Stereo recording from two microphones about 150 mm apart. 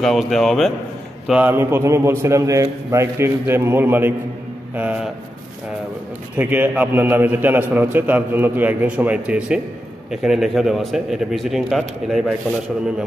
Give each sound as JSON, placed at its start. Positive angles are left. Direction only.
{"t": 0.0, "sound": "speech", "side_deg": 0}
{"t": 1.2, "sound": "a man's voice", "side_deg": -10}
{"t": 6.3, "sound": "a man's voice", "side_deg": -10}